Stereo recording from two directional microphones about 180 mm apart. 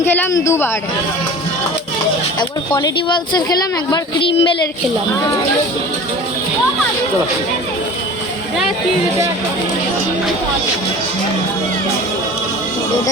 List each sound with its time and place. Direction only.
0.0 s speech: 10° left (ahead or behind)
2.4 s speech: 25° left (ahead or behind)